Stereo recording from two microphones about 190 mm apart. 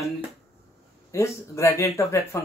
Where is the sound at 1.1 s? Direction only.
15° left (ahead or behind).